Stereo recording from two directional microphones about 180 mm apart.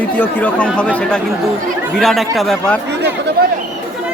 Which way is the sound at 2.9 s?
70° right (ahead or behind).